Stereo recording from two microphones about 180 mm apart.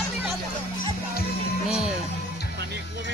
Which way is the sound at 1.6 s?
5° right (ahead or behind).